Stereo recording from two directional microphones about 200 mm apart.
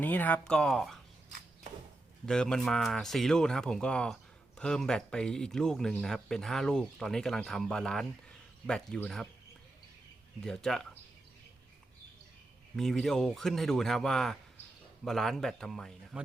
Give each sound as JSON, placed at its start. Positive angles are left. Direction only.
{"t": 0.0, "sound": "speech", "side_deg": 10}
{"t": 2.2, "sound": "speech", "side_deg": 5}
{"t": 10.4, "sound": "speech", "side_deg": 5}
{"t": 12.7, "sound": "speech", "side_deg": 0}